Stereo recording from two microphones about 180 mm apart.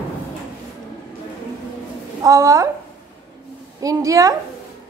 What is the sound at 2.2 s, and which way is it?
Speech, 15° right (ahead or behind).